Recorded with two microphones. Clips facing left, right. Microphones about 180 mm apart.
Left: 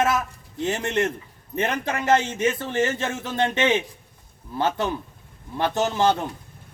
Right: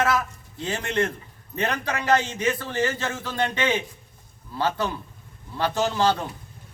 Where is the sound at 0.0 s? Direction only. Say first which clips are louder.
Left 1 dB; 20° left (ahead or behind).